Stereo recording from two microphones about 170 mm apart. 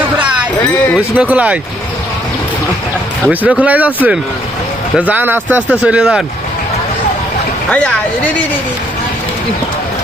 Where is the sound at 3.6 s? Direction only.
10° right (ahead or behind).